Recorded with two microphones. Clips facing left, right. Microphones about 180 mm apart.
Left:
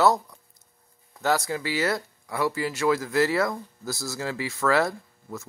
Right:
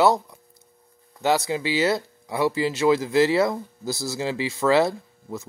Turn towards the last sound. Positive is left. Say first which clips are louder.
# right 4 dB
turn(degrees=-20)  # may be behind; listen again after turning